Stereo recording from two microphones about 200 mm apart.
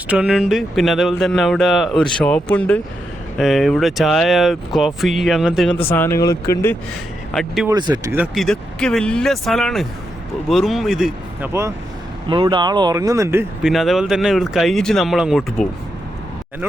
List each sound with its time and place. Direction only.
0.1 s speech: 5° right (ahead or behind)
5.9 s speech: 10° left (ahead or behind)
7.3 s speech: centre (ahead or behind)
7.7 s speech: 20° right (ahead or behind)
8.1 s speech: 5° right (ahead or behind)
12.3 s speech: 25° right (ahead or behind)
13.6 s speech: centre (ahead or behind)